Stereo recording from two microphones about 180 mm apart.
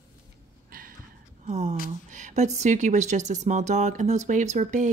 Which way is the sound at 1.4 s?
40° right (ahead or behind).